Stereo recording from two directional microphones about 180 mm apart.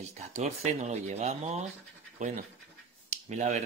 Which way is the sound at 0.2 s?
40° right (ahead or behind).